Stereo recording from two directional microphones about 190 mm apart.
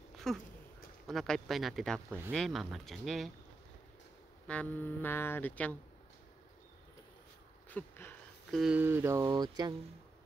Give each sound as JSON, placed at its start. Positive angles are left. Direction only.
{"t": 0.3, "sound": "speech", "side_deg": 0}
{"t": 4.5, "sound": "speech", "side_deg": 10}
{"t": 7.7, "sound": "a sound", "side_deg": 10}
{"t": 8.5, "sound": "speech", "side_deg": -5}